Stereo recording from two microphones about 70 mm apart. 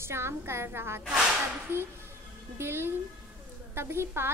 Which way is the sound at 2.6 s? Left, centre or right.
Right.